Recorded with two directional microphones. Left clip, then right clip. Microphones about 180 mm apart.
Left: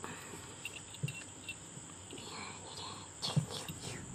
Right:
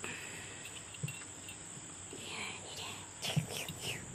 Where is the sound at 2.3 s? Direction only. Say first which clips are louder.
Right 5 dB; 10° right (ahead or behind).